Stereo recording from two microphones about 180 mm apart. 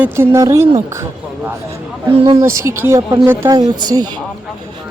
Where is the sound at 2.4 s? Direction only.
15° right (ahead or behind).